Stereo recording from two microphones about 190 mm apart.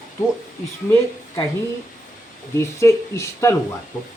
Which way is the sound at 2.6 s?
15° left (ahead or behind).